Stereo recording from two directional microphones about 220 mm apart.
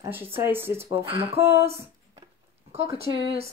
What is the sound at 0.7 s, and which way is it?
Speech, 25° right (ahead or behind).